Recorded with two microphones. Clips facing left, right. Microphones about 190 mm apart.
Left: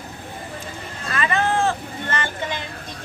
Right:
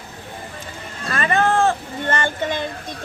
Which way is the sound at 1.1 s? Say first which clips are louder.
Right 3 dB; 45° right (ahead or behind).